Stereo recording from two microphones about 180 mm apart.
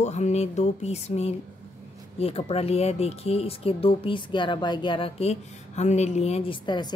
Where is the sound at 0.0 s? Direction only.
40° left (ahead or behind).